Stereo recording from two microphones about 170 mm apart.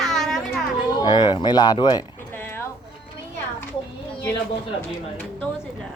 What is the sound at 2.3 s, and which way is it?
Clip-clop, 15° left (ahead or behind).